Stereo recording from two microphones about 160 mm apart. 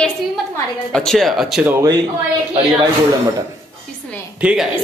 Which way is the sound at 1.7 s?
20° right (ahead or behind).